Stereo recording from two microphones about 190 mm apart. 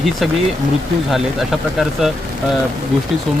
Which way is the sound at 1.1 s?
Centre (ahead or behind).